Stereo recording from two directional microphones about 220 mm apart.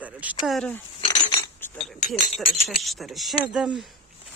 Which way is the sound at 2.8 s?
Centre (ahead or behind).